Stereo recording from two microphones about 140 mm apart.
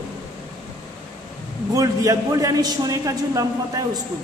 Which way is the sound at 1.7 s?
25° right (ahead or behind).